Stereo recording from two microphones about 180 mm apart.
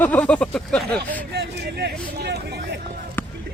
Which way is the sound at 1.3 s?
65° right (ahead or behind).